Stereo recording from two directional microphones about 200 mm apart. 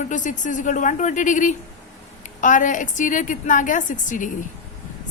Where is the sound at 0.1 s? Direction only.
40° left (ahead or behind).